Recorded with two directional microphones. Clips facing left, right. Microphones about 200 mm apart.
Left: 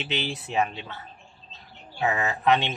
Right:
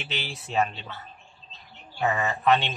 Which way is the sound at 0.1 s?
20° left (ahead or behind).